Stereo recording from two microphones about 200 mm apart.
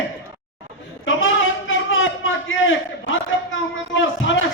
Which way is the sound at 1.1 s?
75° left (ahead or behind).